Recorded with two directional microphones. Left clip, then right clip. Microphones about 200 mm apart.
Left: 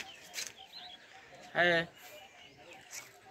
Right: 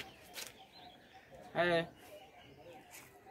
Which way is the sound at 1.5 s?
Centre (ahead or behind).